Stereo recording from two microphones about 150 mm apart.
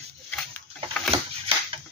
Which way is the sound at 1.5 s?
40° right (ahead or behind).